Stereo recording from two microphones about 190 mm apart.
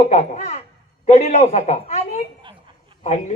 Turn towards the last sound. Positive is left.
turn(degrees=40)  # may be behind; listen again after turning